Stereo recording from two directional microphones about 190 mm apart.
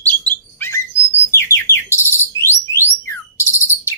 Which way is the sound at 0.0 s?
10° left (ahead or behind).